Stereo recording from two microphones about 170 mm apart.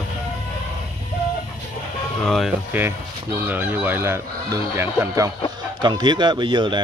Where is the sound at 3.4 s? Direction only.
10° right (ahead or behind); by 6.8 s 25° right (ahead or behind).